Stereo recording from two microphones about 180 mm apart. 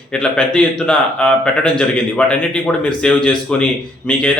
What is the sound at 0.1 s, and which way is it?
A man's voice, 5° left (ahead or behind).